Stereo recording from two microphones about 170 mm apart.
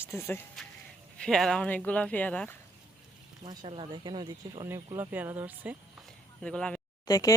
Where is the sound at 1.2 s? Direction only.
5° left (ahead or behind).